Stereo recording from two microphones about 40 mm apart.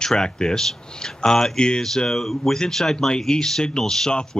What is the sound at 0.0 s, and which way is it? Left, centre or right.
Speech, centre.